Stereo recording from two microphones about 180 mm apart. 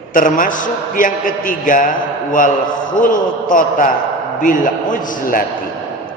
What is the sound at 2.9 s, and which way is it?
Speech, 50° left (ahead or behind).